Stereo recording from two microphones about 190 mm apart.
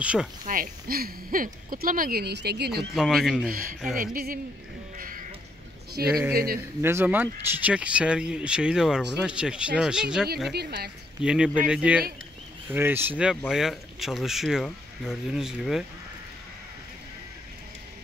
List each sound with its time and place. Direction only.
0.0 s speech: 5° right (ahead or behind)
0.5 s speech: 50° right (ahead or behind)
2.9 s speech: centre (ahead or behind)
3.9 s speech: 50° right (ahead or behind)
4.9 s crow: 45° right (ahead or behind)
6.3 s speech: 50° right (ahead or behind)
6.8 s speech: 10° right (ahead or behind)
10.5 s speech: 60° right (ahead or behind)
11.2 s speech: 5° right (ahead or behind)